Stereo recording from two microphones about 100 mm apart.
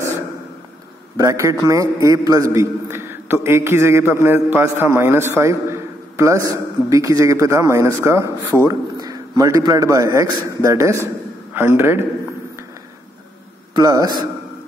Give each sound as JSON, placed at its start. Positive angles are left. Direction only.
{"t": 1.1, "sound": "a man's voice", "side_deg": -30}
{"t": 13.7, "sound": "a man's voice", "side_deg": -40}